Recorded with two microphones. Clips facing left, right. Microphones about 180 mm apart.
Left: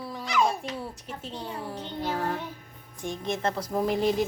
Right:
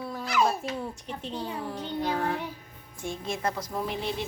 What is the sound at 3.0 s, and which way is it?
Speech, 20° left (ahead or behind).